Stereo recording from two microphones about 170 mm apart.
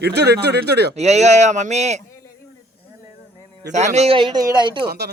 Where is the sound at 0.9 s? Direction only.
40° right (ahead or behind).